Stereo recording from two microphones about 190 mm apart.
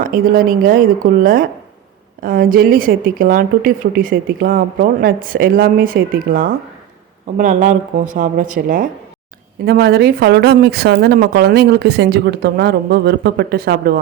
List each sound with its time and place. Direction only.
0.0 s speech: 50° right (ahead or behind)